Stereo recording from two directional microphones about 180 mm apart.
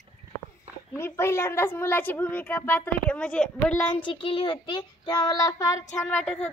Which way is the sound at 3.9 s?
30° left (ahead or behind).